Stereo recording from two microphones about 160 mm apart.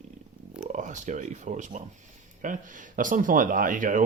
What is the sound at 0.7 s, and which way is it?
Speech, 50° right (ahead or behind).